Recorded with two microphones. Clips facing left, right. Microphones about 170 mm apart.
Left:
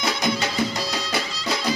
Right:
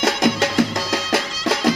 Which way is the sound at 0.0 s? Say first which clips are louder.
Right 6 dB; 90° right.